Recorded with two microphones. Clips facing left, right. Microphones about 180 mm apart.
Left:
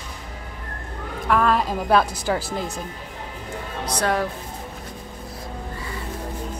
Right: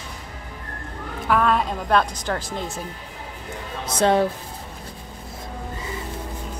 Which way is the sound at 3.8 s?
25° right (ahead or behind).